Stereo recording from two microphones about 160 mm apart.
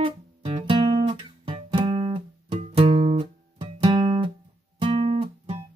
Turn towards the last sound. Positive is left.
turn(degrees=-35)  # may be behind; listen again after turning